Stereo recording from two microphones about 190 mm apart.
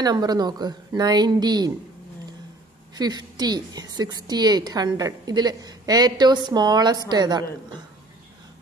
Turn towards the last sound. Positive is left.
turn(degrees=-20)  # may be behind; listen again after turning